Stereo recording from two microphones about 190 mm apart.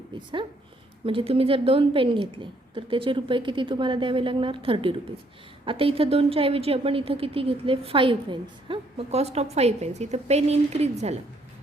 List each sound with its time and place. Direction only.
0.1 s a woman's voice: 25° right (ahead or behind)